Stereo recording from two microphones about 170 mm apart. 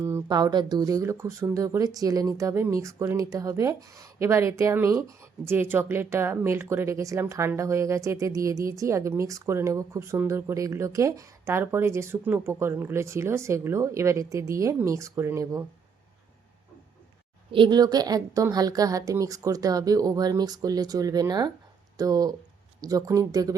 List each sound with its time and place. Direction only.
0.0 s speech: 15° right (ahead or behind)
17.5 s a woman's voice: 25° right (ahead or behind)